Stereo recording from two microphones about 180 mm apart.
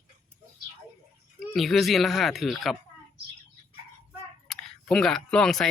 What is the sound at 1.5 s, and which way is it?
Speech, centre (ahead or behind).